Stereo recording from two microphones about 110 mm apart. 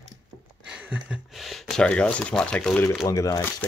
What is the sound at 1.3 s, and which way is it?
Speech, centre (ahead or behind).